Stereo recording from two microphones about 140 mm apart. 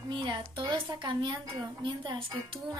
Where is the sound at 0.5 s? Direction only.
35° right (ahead or behind).